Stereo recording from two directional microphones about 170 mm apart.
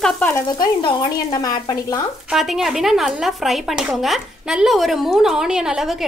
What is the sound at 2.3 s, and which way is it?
A woman's voice, centre (ahead or behind).